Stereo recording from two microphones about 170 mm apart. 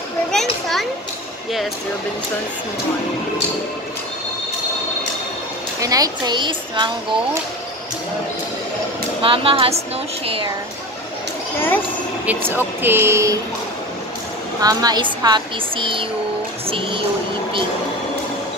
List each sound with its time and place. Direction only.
0.3 s children playing: centre (ahead or behind)
5.8 s speech: 20° right (ahead or behind)
9.2 s speech: 30° right (ahead or behind)
11.5 s speech: 10° left (ahead or behind)
12.4 s speech: 10° right (ahead or behind)
14.6 s speech: 20° right (ahead or behind)